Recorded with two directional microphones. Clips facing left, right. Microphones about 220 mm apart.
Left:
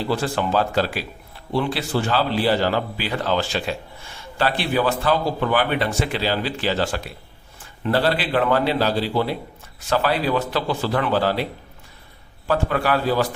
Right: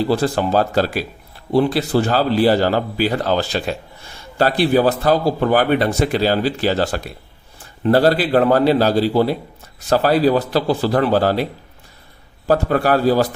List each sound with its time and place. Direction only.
0.0 s a man's voice: 40° right (ahead or behind)
12.5 s a man's voice: 40° right (ahead or behind)